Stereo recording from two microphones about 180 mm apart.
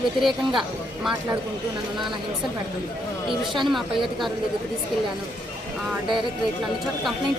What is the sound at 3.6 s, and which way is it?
Speech, centre (ahead or behind).